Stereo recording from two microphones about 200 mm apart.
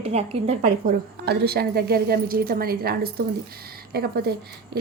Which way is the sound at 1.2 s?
50° right (ahead or behind).